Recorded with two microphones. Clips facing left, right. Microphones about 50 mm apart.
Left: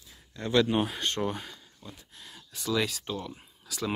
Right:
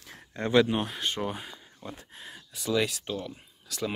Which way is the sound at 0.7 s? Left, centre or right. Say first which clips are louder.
Left 1 dB; centre.